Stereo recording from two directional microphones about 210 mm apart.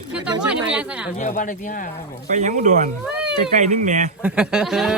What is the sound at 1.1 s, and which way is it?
Speech, 35° left (ahead or behind).